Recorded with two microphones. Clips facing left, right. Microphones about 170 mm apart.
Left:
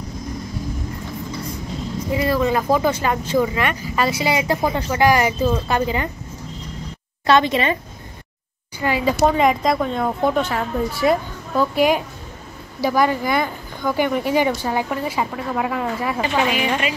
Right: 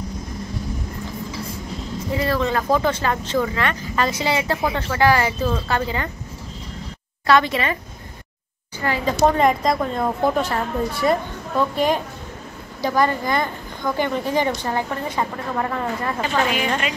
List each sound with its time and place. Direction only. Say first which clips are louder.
2.1 s speech: left 2 dB; 10° left (ahead or behind)
7.2 s a woman's voice: left 2 dB; 20° left (ahead or behind)
8.8 s a woman's voice: left 1 dB; 10° left (ahead or behind)